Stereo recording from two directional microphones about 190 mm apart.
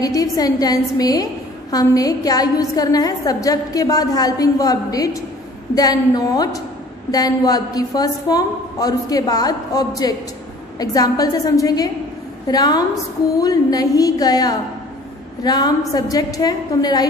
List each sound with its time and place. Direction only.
0.0 s a woman's voice: 20° left (ahead or behind)